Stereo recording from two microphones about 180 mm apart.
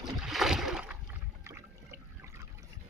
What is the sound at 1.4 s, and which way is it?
Water, 15° right (ahead or behind).